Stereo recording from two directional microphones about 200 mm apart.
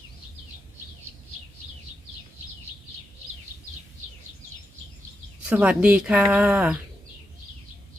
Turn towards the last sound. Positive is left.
turn(degrees=-5)  # may be behind; listen again after turning